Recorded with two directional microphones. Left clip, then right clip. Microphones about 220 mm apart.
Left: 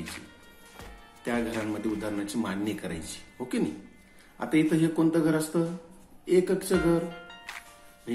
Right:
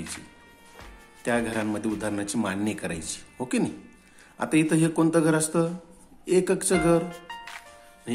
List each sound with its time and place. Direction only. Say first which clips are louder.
1.2 s a man's voice: right 4 dB; 35° right (ahead or behind)